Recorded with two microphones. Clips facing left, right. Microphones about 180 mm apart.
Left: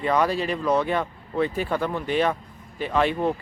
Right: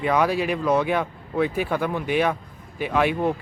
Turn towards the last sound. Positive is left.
turn(degrees=-10)  # may be behind; listen again after turning